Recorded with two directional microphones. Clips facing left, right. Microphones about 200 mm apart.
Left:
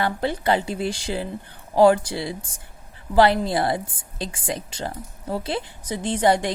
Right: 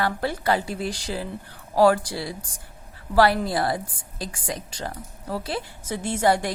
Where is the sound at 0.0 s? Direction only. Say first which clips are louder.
Left 2 dB; 20° left (ahead or behind).